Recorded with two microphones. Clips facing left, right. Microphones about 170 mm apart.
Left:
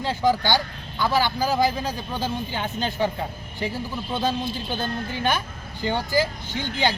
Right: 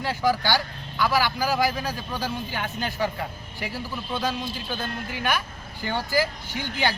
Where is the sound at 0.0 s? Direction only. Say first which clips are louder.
Left 2 dB; 20° left (ahead or behind).